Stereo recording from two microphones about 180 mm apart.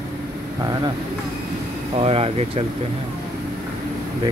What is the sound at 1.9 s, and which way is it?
Speech, 35° right (ahead or behind).